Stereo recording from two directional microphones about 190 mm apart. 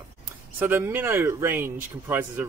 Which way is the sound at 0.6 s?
10° right (ahead or behind).